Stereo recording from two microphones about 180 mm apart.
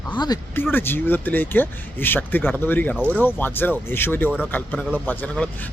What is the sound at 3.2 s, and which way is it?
Speech, 10° left (ahead or behind).